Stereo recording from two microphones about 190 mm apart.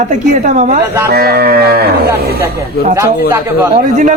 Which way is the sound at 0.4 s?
40° right (ahead or behind).